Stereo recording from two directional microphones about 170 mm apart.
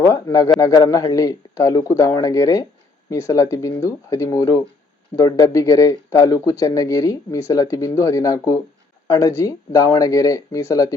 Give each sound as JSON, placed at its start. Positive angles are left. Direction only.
{"t": 0.0, "sound": "speech", "side_deg": 20}